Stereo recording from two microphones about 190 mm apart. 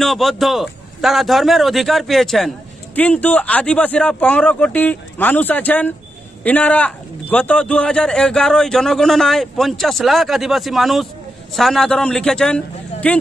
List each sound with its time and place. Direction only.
0.0 s a man's voice: centre (ahead or behind)